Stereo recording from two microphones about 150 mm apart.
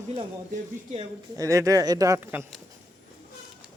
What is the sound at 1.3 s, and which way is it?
Speech, 20° right (ahead or behind).